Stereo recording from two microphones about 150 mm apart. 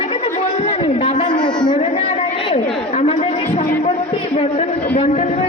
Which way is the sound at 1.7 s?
45° left (ahead or behind).